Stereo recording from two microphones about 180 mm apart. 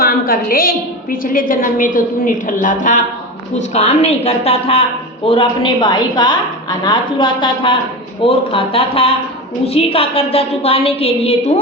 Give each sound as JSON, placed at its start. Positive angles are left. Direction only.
{"t": 0.0, "sound": "a woman's voice", "side_deg": 55}